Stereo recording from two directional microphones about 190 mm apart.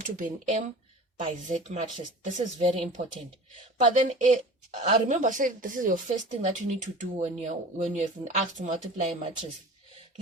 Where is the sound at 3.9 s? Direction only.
40° right (ahead or behind).